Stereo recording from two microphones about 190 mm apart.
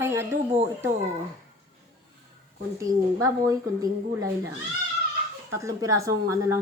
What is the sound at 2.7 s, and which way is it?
A woman's voice, 15° right (ahead or behind).